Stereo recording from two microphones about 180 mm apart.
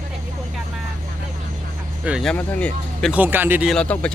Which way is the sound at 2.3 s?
10° left (ahead or behind).